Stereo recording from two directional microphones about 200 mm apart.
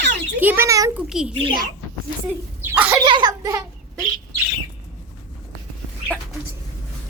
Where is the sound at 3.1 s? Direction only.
20° right (ahead or behind).